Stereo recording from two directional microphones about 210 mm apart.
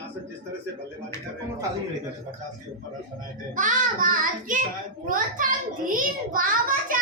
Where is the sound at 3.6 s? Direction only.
40° right (ahead or behind).